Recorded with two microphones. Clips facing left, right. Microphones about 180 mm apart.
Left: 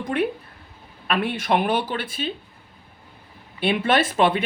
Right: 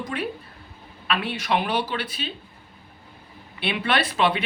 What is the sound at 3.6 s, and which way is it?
Speech, 45° left (ahead or behind).